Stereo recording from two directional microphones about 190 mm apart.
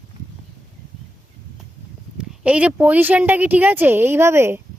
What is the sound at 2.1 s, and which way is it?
A woman's voice, 5° right (ahead or behind).